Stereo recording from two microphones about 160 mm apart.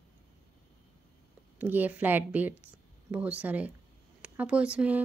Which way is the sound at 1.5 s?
10° right (ahead or behind).